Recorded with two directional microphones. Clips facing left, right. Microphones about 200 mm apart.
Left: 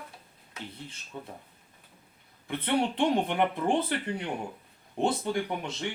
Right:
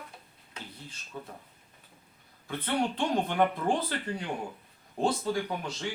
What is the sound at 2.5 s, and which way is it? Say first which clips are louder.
Speech: left 2 dB; 20° left (ahead or behind).